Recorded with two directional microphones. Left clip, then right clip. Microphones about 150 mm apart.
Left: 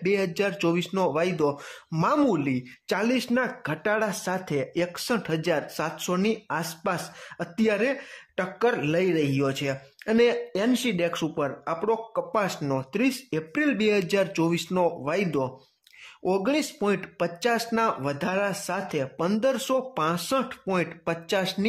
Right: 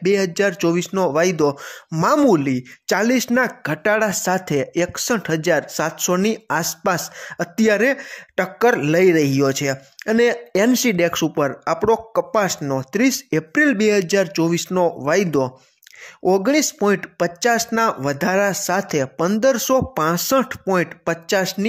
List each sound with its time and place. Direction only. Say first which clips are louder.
0.0 s speech: right 7 dB; 30° right (ahead or behind)
10.5 s speech: right 9 dB; 40° right (ahead or behind)